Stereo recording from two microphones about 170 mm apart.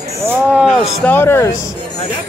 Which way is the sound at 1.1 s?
15° left (ahead or behind).